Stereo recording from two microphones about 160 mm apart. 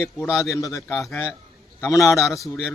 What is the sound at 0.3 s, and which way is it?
A man's voice, 20° left (ahead or behind).